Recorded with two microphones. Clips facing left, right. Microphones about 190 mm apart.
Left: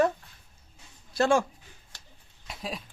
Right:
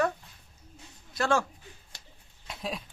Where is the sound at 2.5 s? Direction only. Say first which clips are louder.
Right 1 dB; centre (ahead or behind).